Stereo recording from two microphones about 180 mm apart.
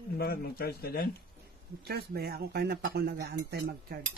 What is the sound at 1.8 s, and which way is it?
Speech, 60° right (ahead or behind).